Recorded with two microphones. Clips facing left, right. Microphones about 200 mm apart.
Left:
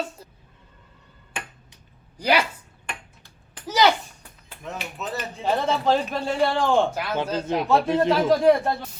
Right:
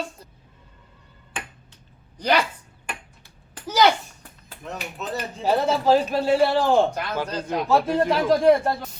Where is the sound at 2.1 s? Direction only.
10° left (ahead or behind).